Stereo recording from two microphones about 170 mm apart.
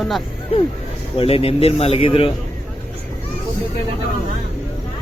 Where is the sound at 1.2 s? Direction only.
35° left (ahead or behind).